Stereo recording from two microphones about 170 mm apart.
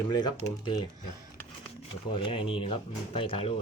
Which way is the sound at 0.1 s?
25° left (ahead or behind).